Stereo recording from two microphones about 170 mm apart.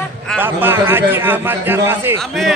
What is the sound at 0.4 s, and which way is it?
A man's voice, 10° right (ahead or behind).